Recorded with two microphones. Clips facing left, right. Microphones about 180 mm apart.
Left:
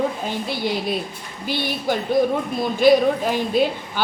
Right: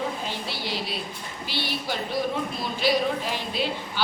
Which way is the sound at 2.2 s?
45° left (ahead or behind).